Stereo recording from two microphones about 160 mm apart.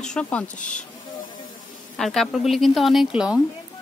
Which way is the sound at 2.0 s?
Centre (ahead or behind).